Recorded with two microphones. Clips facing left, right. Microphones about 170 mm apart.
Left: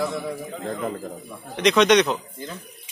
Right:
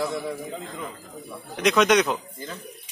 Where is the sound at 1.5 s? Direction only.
5° right (ahead or behind).